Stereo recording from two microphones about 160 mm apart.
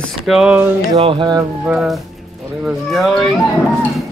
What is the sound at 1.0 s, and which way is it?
Speech, 35° right (ahead or behind).